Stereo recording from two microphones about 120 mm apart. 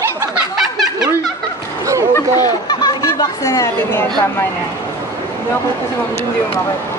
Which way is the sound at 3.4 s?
25° left (ahead or behind).